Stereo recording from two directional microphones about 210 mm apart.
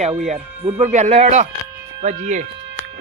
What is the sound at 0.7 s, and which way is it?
Speech, 30° right (ahead or behind).